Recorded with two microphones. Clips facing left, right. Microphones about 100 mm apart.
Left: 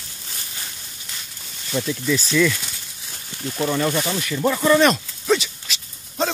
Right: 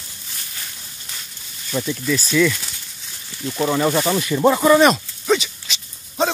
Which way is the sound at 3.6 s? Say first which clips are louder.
Right 3 dB; 25° right (ahead or behind).